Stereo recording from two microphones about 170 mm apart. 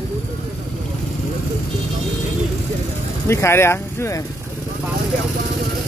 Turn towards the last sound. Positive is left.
turn(degrees=15)  # may be behind; listen again after turning